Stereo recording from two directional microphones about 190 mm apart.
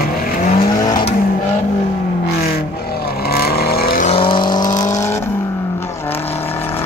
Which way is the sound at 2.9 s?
55° left (ahead or behind).